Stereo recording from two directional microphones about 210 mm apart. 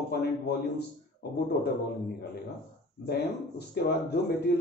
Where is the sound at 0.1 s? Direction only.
50° left (ahead or behind).